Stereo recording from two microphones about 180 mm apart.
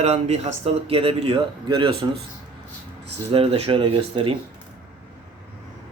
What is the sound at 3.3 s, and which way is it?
Speech, 30° right (ahead or behind).